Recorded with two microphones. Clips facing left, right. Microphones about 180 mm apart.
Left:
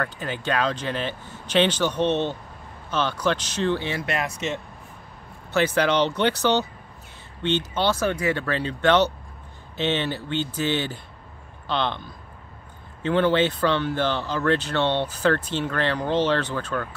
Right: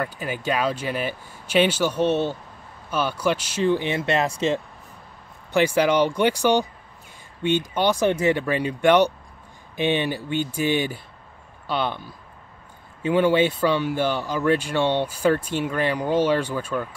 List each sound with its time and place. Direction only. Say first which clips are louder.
0.0 s speech: right 1 dB; 10° right (ahead or behind); by 4.6 s 30° right (ahead or behind)
5.5 s speech: right 2 dB; 10° right (ahead or behind)
8.1 s speech: right 4 dB; 25° right (ahead or behind)
8.4 s speech: right 3 dB; 15° right (ahead or behind)